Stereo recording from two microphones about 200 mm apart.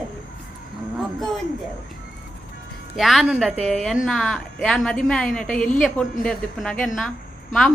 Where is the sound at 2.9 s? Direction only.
Centre (ahead or behind).